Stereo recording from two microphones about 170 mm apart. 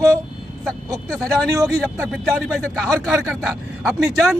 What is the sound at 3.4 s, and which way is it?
Speech, centre (ahead or behind).